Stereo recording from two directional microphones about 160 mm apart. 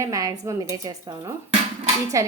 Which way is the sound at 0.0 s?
20° right (ahead or behind).